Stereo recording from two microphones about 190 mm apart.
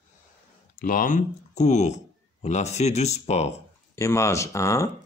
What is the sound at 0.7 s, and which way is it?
Speech, 50° left (ahead or behind).